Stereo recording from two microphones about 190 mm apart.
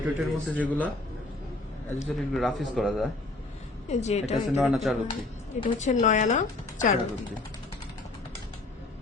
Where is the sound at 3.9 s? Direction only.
35° left (ahead or behind).